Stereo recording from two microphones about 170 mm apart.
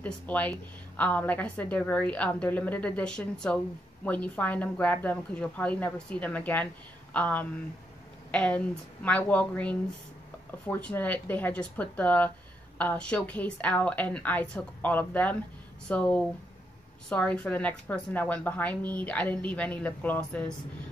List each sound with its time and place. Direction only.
0.0 s a woman's voice: 10° left (ahead or behind)